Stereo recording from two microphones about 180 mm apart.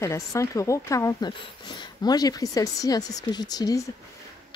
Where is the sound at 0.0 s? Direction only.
15° left (ahead or behind).